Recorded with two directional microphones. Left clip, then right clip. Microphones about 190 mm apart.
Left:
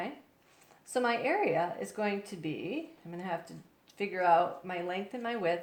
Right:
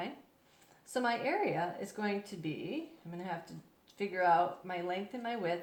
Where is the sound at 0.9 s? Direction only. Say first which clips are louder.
Left 3 dB; 30° left (ahead or behind).